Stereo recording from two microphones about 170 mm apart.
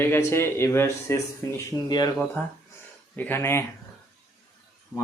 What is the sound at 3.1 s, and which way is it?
Speech, 10° left (ahead or behind).